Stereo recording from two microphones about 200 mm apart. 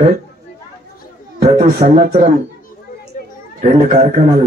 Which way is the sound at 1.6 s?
50° right (ahead or behind).